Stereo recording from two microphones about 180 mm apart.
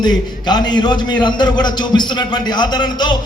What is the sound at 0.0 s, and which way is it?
Speech, 25° left (ahead or behind).